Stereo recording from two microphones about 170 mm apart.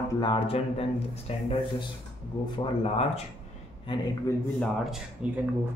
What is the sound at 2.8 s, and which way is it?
Speech, 35° left (ahead or behind).